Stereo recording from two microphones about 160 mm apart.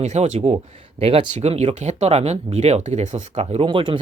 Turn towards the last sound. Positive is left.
turn(degrees=-30)  # may be behind; listen again after turning